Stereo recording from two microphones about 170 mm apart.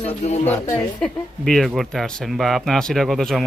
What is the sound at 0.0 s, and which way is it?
Speech, 40° left (ahead or behind).